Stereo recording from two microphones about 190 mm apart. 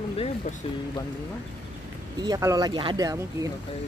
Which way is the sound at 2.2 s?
20° right (ahead or behind).